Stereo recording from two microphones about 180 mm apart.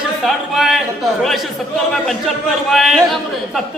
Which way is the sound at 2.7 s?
Centre (ahead or behind).